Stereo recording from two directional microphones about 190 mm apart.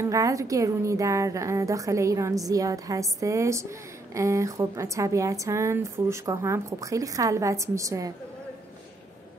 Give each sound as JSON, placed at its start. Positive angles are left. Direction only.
{"t": 0.0, "sound": "speech", "side_deg": -15}